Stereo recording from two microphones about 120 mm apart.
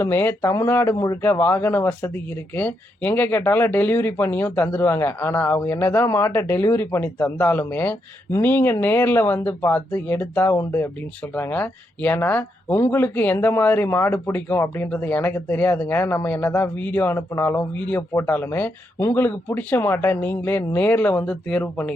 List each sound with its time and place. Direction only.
0.0 s speech: 20° left (ahead or behind)
1.2 s speech: 20° left (ahead or behind)